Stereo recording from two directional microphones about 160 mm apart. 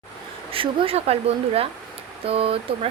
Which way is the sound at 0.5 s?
35° right (ahead or behind).